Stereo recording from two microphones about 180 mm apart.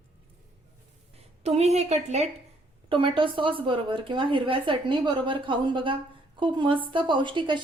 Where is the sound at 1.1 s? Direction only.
35° right (ahead or behind).